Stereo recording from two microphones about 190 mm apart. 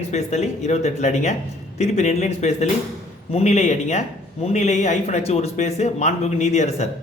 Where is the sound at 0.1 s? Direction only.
35° left (ahead or behind).